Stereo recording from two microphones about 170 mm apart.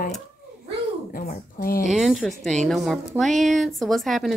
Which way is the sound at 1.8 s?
Centre (ahead or behind).